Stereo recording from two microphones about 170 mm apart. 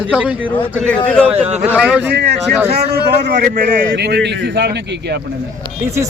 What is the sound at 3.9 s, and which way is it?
A man's voice, 75° right (ahead or behind).